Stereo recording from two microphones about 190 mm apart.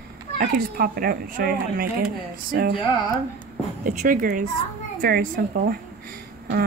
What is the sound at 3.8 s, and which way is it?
A woman's voice, 45° right (ahead or behind).